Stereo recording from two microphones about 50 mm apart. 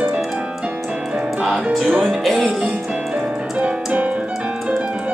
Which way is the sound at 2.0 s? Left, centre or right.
Centre.